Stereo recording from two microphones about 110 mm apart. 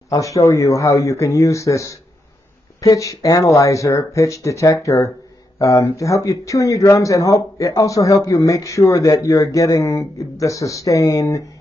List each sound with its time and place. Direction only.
0.1 s speech: 30° left (ahead or behind)